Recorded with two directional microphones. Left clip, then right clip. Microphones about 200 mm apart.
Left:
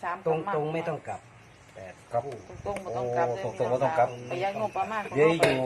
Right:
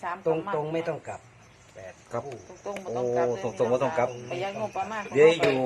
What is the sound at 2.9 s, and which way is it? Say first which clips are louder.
Speech: right 2 dB; 10° right (ahead or behind).